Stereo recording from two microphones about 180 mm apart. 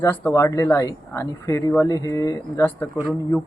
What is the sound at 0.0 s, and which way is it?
Speech, 10° left (ahead or behind).